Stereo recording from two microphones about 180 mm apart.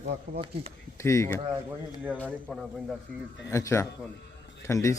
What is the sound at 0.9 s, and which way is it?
Speech, 15° left (ahead or behind).